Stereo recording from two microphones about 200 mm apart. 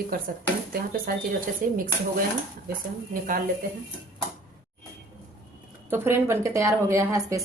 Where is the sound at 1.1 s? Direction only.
45° right (ahead or behind).